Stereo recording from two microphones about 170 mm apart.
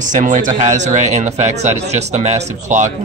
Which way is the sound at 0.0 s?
50° right (ahead or behind).